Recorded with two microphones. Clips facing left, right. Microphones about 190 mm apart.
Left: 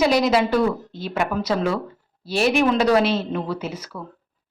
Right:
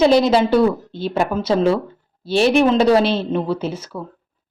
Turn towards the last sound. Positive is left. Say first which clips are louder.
# right 5 dB
turn(degrees=-25)  # may be behind; listen again after turning